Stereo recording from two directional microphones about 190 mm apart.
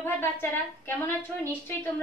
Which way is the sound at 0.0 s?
10° left (ahead or behind).